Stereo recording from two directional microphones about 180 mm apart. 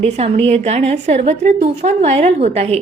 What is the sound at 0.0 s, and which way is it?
A woman's voice, 35° right (ahead or behind).